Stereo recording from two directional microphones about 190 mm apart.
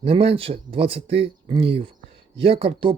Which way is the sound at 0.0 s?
30° right (ahead or behind).